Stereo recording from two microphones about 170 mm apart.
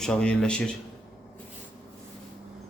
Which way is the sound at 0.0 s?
5° left (ahead or behind).